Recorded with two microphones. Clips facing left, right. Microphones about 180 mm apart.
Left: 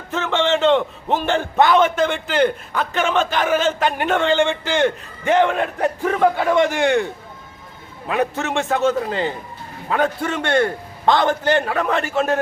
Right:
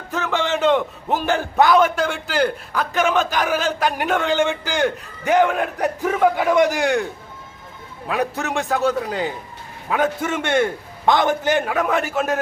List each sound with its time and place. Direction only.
0.2 s a man's voice: 5° right (ahead or behind)